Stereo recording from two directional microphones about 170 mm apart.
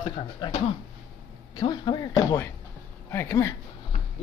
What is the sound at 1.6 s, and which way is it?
Speech, 25° left (ahead or behind).